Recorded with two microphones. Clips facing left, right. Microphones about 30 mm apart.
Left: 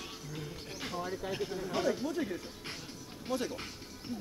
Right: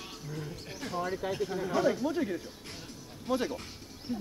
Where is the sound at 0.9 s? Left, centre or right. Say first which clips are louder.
Right 5 dB; centre.